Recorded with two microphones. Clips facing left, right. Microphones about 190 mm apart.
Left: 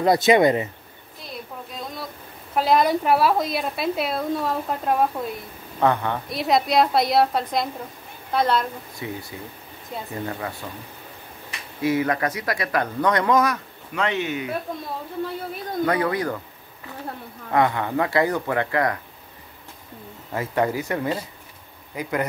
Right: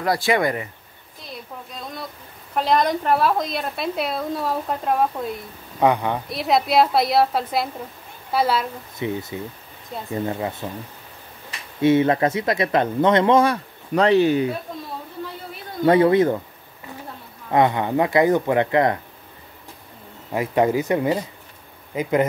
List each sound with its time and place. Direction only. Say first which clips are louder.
0.0 s speech: left 4 dB; 20° left (ahead or behind)
2.5 s a woman's voice: left 1 dB; 5° left (ahead or behind)
5.8 s a woman's voice: right 2 dB; 15° right (ahead or behind)
6.2 s a woman's voice: left 1 dB; centre (ahead or behind)
9.0 s speech: right 7 dB; 20° right (ahead or behind)
11.8 s speech: right 5 dB; 25° right (ahead or behind)
15.8 s speech: right 8 dB; 25° right (ahead or behind)
17.5 s speech: right 3 dB; 20° right (ahead or behind)
20.3 s speech: right 4 dB; 20° right (ahead or behind)